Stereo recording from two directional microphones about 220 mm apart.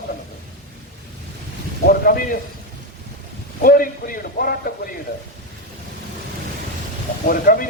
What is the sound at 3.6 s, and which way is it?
Speech, 40° left (ahead or behind).